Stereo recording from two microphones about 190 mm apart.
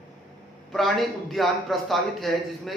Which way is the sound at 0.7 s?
Centre (ahead or behind).